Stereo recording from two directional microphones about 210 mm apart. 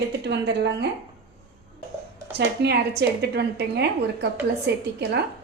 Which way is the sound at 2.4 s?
50° right (ahead or behind).